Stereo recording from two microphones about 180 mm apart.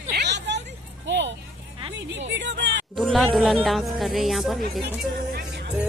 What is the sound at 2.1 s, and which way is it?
Music, 80° right.